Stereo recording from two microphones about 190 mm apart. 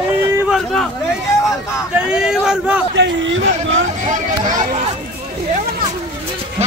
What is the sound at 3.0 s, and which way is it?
Speech, 75° right (ahead or behind).